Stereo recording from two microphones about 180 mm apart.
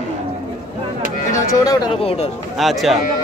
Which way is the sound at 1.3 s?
20° left (ahead or behind).